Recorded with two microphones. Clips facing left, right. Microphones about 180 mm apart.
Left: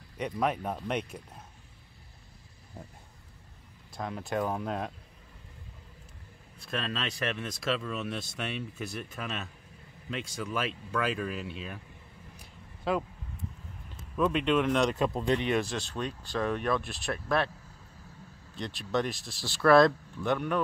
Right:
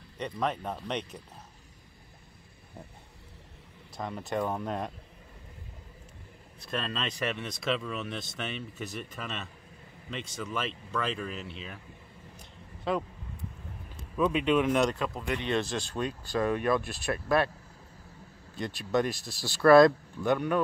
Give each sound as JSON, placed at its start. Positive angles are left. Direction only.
{"t": 0.2, "sound": "speech", "side_deg": 10}
{"t": 3.9, "sound": "speech", "side_deg": 0}
{"t": 6.7, "sound": "speech", "side_deg": 0}
{"t": 12.9, "sound": "speech", "side_deg": 0}
{"t": 15.1, "sound": "speech", "side_deg": 25}
{"t": 15.4, "sound": "speech", "side_deg": 10}
{"t": 18.6, "sound": "speech", "side_deg": 0}